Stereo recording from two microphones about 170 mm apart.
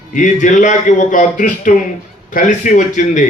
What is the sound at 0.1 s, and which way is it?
A man's voice, 50° left (ahead or behind).